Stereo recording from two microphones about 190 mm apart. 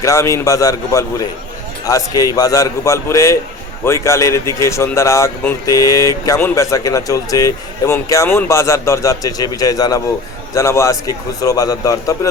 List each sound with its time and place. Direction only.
0.0 s speech: 15° left (ahead or behind)